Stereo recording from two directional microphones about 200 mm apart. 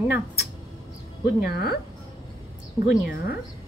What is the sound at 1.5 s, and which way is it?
Speech, 50° left (ahead or behind).